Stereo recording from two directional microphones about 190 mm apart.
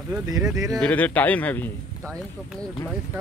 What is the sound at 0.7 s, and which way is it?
A man's voice, 5° left (ahead or behind).